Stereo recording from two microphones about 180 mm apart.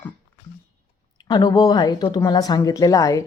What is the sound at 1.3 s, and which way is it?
Speech, 20° left (ahead or behind).